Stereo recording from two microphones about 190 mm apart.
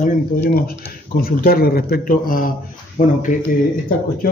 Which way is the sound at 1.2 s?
50° left (ahead or behind).